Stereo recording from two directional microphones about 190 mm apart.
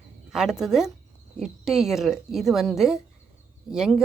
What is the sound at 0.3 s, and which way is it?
A woman's voice, 5° right (ahead or behind).